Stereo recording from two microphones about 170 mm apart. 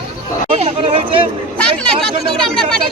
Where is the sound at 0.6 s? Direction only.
35° right (ahead or behind).